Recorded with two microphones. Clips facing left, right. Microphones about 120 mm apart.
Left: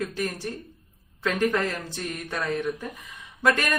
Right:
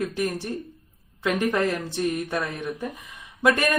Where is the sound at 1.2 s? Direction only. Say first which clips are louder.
Right 1 dB; 20° right (ahead or behind).